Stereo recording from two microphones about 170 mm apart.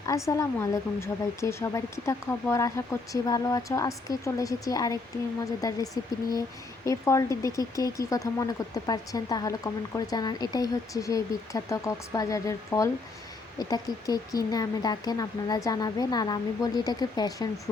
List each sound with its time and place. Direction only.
0.3 s speech: 20° left (ahead or behind)